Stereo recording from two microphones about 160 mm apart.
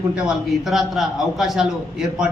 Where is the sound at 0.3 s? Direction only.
Centre (ahead or behind).